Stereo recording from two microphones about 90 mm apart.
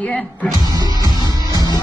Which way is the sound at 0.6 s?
45° right (ahead or behind).